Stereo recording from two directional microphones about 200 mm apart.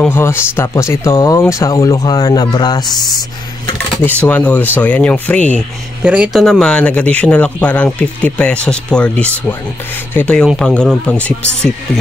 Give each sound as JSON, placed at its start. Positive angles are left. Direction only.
{"t": 0.0, "sound": "speech", "side_deg": 10}
{"t": 3.7, "sound": "speech", "side_deg": 5}
{"t": 6.0, "sound": "speech", "side_deg": -5}